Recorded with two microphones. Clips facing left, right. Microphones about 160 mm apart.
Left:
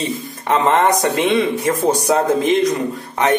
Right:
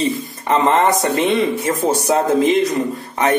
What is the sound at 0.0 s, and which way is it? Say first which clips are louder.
A man's voice: right 3 dB; centre (ahead or behind).